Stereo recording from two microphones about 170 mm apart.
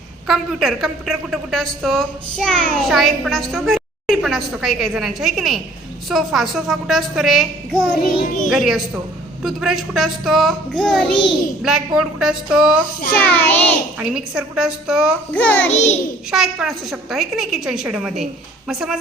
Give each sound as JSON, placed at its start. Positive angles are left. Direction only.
{"t": 0.3, "sound": "a woman's voice", "side_deg": 0}
{"t": 13.1, "sound": "child singing", "side_deg": 10}
{"t": 14.0, "sound": "a woman's voice", "side_deg": -5}
{"t": 15.3, "sound": "child singing", "side_deg": 10}
{"t": 15.7, "sound": "a child's voice", "side_deg": 40}
{"t": 16.3, "sound": "a woman's voice", "side_deg": 0}